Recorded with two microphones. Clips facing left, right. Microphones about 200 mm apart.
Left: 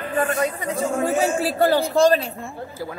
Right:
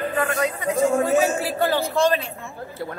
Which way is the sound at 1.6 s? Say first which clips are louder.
Left 4 dB; 40° left (ahead or behind).